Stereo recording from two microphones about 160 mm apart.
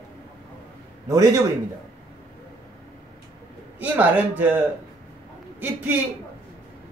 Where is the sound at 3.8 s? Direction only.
10° right (ahead or behind).